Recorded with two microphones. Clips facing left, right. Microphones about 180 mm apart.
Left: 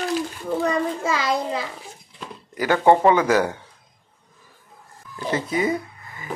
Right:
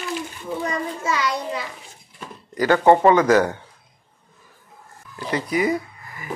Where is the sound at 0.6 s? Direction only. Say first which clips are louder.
Left 3 dB; 75° left (ahead or behind).